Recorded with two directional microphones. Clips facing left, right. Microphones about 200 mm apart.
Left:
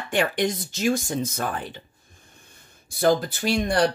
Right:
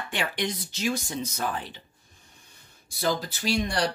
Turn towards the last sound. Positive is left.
turn(degrees=50)  # may be behind; listen again after turning